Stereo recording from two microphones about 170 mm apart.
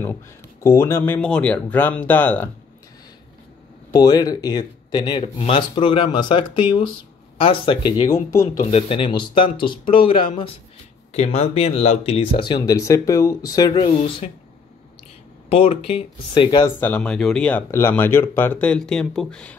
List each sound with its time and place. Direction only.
0.6 s speech: 15° left (ahead or behind)
3.9 s speech: 20° left (ahead or behind)
8.1 s speech: 20° left (ahead or behind)
8.5 s speech: 35° left (ahead or behind)
13.8 s speech: 35° left (ahead or behind)
15.5 s speech: 35° left (ahead or behind)
16.8 s speech: 5° left (ahead or behind)